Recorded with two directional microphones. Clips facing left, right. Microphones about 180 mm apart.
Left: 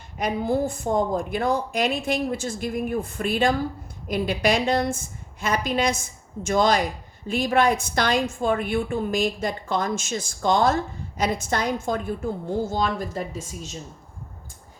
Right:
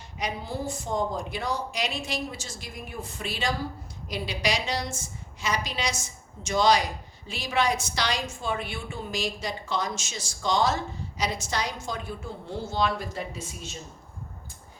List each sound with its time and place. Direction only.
0.2 s a woman's voice: 55° left (ahead or behind)